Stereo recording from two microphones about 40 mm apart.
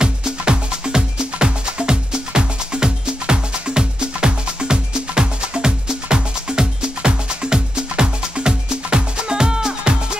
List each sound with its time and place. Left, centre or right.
0.0 s music: centre